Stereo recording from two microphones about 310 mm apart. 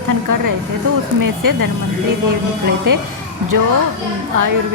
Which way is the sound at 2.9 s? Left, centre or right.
Right.